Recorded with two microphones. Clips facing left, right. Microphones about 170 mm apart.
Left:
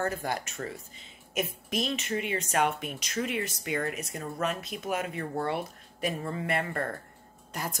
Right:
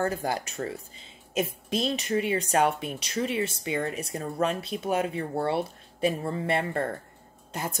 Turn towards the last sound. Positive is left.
turn(degrees=-25)  # may be behind; listen again after turning